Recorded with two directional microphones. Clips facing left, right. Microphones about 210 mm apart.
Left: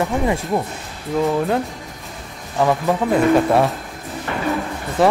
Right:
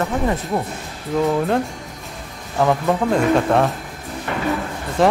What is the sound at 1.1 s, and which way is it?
Speech, 5° left (ahead or behind).